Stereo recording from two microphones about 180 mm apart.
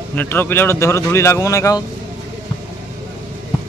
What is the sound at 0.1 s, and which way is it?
Speech, 10° left (ahead or behind).